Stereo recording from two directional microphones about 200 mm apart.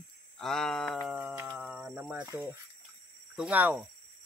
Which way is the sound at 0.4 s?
5° left (ahead or behind).